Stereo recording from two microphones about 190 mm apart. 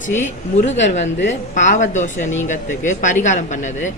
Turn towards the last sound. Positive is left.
turn(degrees=40)  # may be behind; listen again after turning